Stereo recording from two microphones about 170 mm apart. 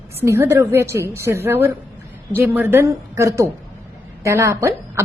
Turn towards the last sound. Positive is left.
turn(degrees=-15)  # may be behind; listen again after turning